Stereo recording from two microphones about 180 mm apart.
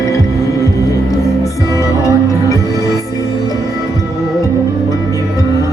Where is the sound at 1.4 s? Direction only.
15° left (ahead or behind).